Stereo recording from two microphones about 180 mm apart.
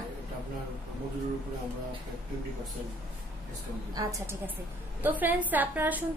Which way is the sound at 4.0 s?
20° right (ahead or behind).